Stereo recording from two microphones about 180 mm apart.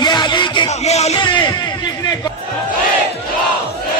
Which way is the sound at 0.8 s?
35° left (ahead or behind).